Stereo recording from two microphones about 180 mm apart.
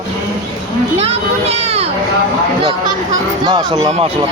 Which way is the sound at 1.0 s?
35° right (ahead or behind).